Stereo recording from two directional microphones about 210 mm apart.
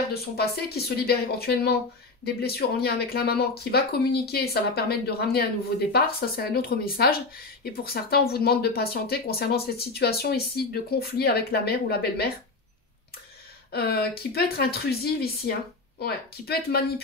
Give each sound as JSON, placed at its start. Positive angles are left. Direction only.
{"t": 0.1, "sound": "speech", "side_deg": 50}
{"t": 13.7, "sound": "speech", "side_deg": 50}